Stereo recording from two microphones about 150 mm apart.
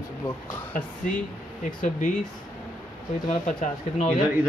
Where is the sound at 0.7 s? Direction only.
65° left (ahead or behind).